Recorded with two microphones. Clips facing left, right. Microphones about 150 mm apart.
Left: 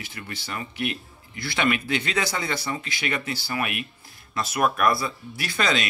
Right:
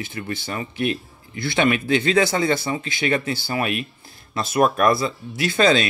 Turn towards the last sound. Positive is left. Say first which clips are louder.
# right 8 dB
turn(degrees=-30)  # may be behind; listen again after turning